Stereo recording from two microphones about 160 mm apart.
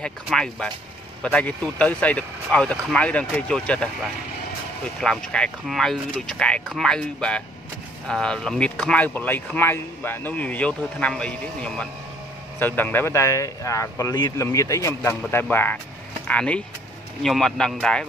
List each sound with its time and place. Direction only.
0.0 s speech: 5° left (ahead or behind)